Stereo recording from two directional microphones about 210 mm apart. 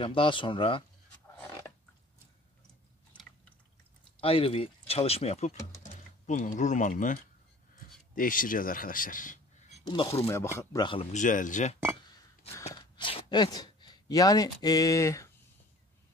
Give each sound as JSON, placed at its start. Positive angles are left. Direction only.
{"t": 0.0, "sound": "speech", "side_deg": 25}
{"t": 4.2, "sound": "speech", "side_deg": 25}
{"t": 9.8, "sound": "speech", "side_deg": 20}
{"t": 12.5, "sound": "speech", "side_deg": 15}